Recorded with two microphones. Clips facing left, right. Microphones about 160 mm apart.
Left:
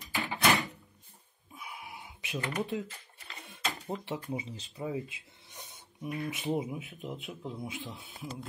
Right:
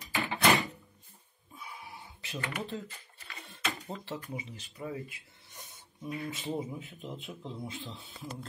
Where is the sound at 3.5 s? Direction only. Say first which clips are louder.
Left 2 dB; 15° left (ahead or behind).